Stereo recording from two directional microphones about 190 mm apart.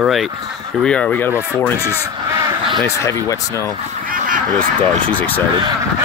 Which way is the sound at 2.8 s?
15° left (ahead or behind).